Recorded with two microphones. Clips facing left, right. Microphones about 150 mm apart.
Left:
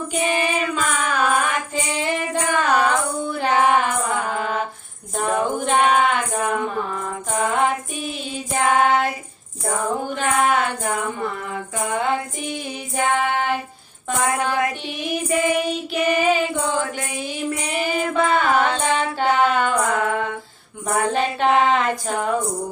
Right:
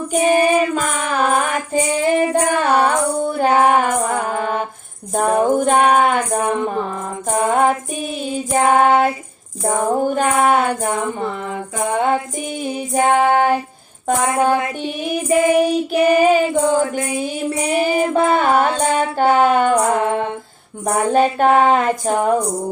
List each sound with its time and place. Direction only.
0.1 s music: 40° right (ahead or behind)
8.5 s child singing: 35° right (ahead or behind)
9.6 s music: 40° right (ahead or behind)
12.9 s female singing: 40° right (ahead or behind)
14.8 s child singing: 45° right (ahead or behind)
17.2 s music: 35° right (ahead or behind)
20.8 s a sound: 45° right (ahead or behind)